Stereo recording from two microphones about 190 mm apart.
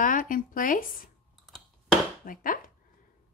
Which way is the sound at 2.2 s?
45° left (ahead or behind).